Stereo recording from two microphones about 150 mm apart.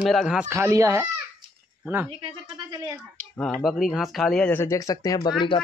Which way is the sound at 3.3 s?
10° left (ahead or behind).